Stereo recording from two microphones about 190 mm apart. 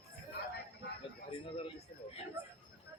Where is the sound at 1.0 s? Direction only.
25° left (ahead or behind).